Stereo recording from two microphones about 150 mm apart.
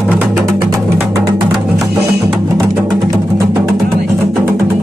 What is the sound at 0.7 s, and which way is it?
Music, 25° right (ahead or behind).